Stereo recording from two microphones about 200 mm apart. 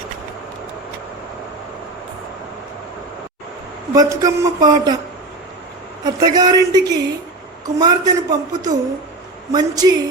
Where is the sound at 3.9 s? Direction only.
20° right (ahead or behind).